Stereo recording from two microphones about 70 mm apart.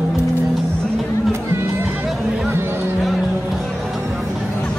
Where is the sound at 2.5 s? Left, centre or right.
Right.